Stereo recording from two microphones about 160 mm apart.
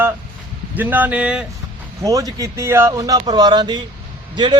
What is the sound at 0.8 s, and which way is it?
Speech, 10° right (ahead or behind).